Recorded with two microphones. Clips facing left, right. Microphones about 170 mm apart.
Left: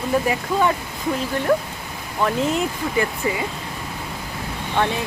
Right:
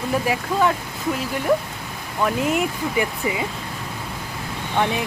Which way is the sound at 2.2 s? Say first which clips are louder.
Even; 5° right (ahead or behind).